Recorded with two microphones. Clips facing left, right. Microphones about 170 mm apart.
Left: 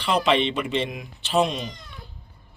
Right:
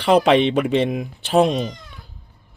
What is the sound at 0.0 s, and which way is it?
Speech, 50° right (ahead or behind).